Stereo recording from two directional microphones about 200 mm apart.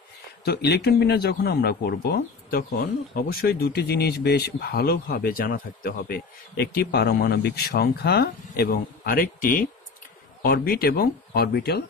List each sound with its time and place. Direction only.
0.5 s a man's voice: 55° left (ahead or behind)